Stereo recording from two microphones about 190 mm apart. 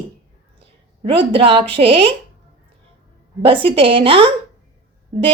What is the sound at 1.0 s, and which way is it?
Speech, 30° right (ahead or behind).